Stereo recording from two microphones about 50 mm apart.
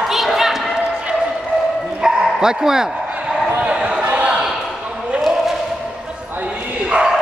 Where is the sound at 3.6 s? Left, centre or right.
Right.